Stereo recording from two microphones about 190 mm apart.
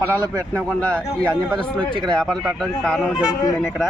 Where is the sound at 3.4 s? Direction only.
20° left (ahead or behind).